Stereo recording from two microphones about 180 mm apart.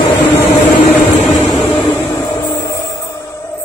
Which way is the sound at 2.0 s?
20° left (ahead or behind).